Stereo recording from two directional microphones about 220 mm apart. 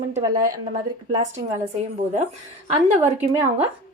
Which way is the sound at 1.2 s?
30° right (ahead or behind).